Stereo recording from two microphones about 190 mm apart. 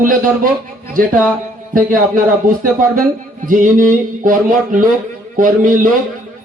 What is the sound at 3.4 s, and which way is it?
Music, 45° right (ahead or behind).